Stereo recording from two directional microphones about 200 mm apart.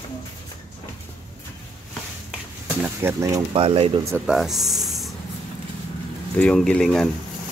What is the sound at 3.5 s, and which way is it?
Speech, 30° right (ahead or behind).